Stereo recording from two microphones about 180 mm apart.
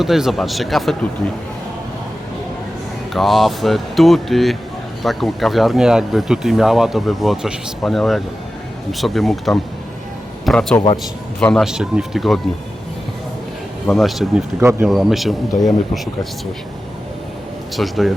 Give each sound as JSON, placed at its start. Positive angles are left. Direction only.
{"t": 0.0, "sound": "speech", "side_deg": 0}
{"t": 3.1, "sound": "a man's voice", "side_deg": 0}
{"t": 13.8, "sound": "speech", "side_deg": 0}
{"t": 14.6, "sound": "speech", "side_deg": -15}
{"t": 14.8, "sound": "speech", "side_deg": 0}
{"t": 17.7, "sound": "speech", "side_deg": 0}